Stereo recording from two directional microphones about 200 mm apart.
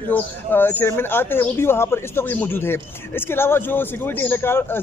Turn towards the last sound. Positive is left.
turn(degrees=10)  # may be behind; listen again after turning